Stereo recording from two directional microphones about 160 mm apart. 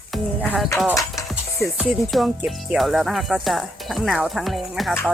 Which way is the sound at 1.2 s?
20° left (ahead or behind).